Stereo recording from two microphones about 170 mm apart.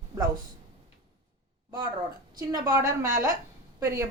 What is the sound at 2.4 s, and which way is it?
A woman's voice, 20° right (ahead or behind).